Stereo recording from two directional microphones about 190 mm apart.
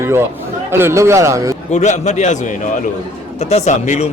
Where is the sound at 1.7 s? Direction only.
40° left (ahead or behind).